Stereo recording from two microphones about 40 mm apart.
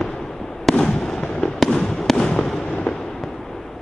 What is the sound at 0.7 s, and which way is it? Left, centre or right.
Fireworks, centre.